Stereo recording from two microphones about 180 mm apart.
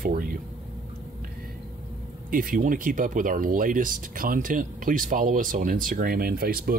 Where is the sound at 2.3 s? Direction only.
50° right (ahead or behind).